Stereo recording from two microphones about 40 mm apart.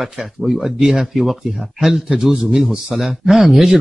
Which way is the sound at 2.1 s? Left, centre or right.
Centre.